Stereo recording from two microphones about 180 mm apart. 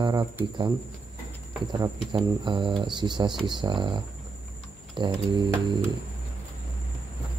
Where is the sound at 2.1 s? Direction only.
25° right (ahead or behind).